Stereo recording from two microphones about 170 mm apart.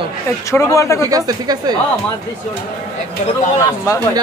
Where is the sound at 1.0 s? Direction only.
20° right (ahead or behind).